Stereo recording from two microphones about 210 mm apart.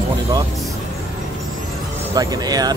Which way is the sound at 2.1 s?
15° right (ahead or behind).